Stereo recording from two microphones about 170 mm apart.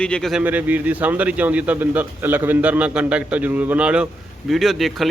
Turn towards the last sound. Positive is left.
turn(degrees=0)  # may be behind; listen again after turning